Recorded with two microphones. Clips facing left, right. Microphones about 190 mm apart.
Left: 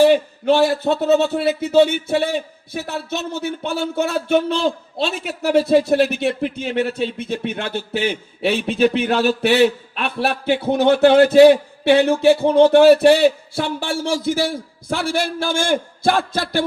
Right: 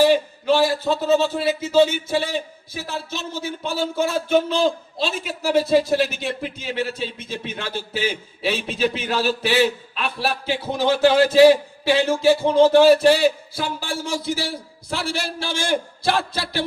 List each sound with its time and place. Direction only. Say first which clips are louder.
0.0 s a man's voice: left 3 dB; 55° left (ahead or behind)